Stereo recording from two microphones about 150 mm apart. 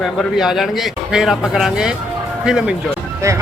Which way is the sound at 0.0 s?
Centre (ahead or behind).